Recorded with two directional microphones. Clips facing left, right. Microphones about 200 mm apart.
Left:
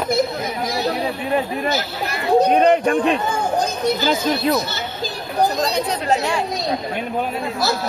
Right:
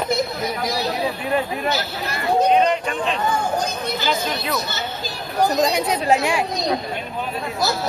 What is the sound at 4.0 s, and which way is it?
Speech, 40° left (ahead or behind).